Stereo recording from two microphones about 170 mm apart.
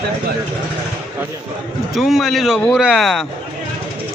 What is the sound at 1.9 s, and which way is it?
Speech, centre (ahead or behind).